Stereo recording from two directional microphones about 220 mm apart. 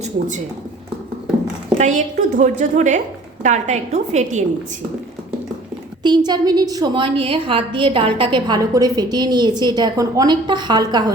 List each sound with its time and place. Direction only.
1.8 s a woman's voice: 35° right (ahead or behind)
6.0 s a woman's voice: 20° right (ahead or behind)